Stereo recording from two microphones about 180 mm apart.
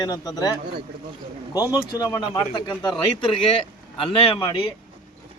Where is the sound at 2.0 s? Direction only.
20° left (ahead or behind).